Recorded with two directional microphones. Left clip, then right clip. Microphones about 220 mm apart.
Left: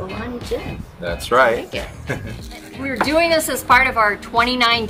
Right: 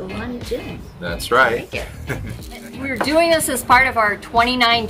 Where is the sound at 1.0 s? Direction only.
15° right (ahead or behind).